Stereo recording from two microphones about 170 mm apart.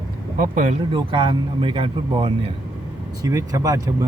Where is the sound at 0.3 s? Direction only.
45° right (ahead or behind).